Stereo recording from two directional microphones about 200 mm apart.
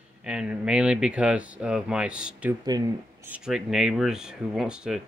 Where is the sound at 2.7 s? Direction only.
20° right (ahead or behind).